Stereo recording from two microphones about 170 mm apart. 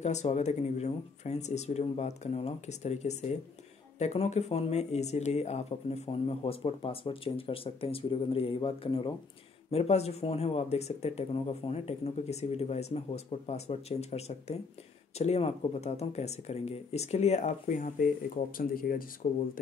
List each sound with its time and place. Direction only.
0.0 s speech: 40° left (ahead or behind); by 19.0 s 55° left (ahead or behind)